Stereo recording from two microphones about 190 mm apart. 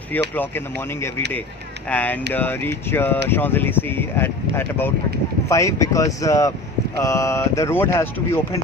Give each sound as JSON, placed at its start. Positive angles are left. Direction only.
{"t": 1.9, "sound": "speech", "side_deg": 10}